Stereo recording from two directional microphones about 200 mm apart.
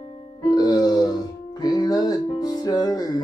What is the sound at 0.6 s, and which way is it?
Music, 20° left (ahead or behind).